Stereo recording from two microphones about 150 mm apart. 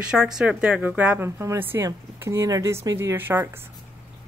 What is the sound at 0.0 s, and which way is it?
Speech, 5° right (ahead or behind).